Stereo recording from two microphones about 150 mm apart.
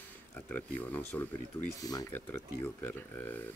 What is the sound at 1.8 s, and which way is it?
Speech, 25° left (ahead or behind).